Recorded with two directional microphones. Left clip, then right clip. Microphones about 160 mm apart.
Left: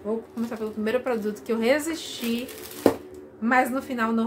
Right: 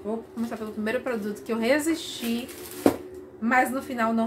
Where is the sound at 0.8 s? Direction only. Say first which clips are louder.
Left 3 dB; 10° left (ahead or behind).